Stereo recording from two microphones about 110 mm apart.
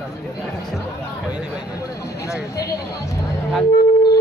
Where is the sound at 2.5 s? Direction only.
30° left (ahead or behind).